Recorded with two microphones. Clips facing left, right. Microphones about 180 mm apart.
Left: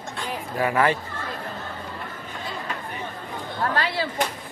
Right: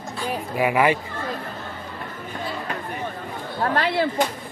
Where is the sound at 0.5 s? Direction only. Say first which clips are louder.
Right 2 dB; 10° right (ahead or behind).